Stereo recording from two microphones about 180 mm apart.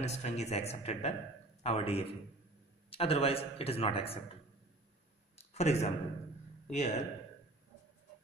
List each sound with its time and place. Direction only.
0.0 s speech: 35° left (ahead or behind)
5.4 s a sound: 35° left (ahead or behind)
6.7 s speech: 40° left (ahead or behind)